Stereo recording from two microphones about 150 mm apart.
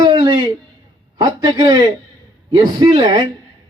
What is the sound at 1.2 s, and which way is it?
A man's voice, 30° right (ahead or behind).